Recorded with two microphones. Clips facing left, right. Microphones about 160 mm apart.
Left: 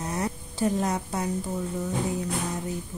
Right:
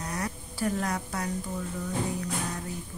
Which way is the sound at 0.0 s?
25° left (ahead or behind).